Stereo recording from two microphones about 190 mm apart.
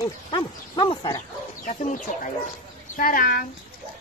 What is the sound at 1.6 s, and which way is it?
Speech, 45° left (ahead or behind).